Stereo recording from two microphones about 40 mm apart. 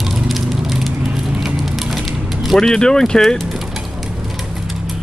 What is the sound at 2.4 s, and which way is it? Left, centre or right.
Vehicle, centre.